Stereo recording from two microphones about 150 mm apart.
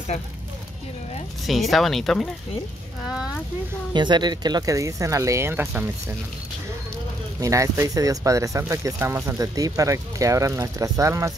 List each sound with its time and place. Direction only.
1.4 s speech: centre (ahead or behind)
3.9 s speech: 30° right (ahead or behind)
7.3 s speech: 20° right (ahead or behind)